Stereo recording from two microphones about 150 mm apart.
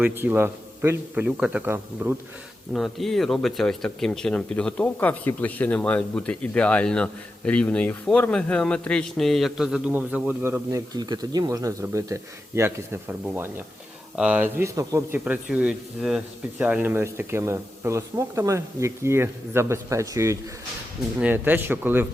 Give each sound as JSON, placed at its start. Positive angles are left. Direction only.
{"t": 0.0, "sound": "speech", "side_deg": -10}
{"t": 2.7, "sound": "speech", "side_deg": 0}
{"t": 15.2, "sound": "speech", "side_deg": -10}